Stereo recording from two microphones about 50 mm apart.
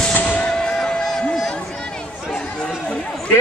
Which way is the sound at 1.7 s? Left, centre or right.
Centre.